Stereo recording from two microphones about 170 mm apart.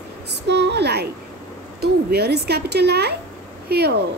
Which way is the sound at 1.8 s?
70° right (ahead or behind).